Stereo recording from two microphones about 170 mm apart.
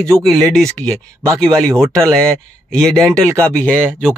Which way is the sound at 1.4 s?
15° right (ahead or behind).